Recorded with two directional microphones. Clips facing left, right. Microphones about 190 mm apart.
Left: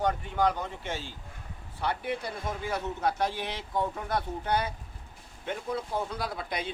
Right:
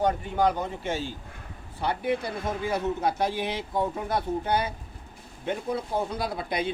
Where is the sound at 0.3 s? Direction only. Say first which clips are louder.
Right 3 dB; 10° right (ahead or behind).